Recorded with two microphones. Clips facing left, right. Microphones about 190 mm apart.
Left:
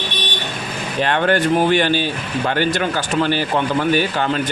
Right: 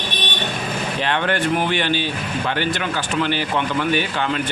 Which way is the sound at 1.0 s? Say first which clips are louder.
Left 5 dB; 45° left (ahead or behind).